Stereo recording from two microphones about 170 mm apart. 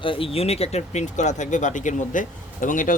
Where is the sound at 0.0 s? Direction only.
30° left (ahead or behind).